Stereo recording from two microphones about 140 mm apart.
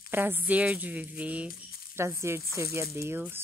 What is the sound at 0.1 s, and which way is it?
Speech, 15° right (ahead or behind).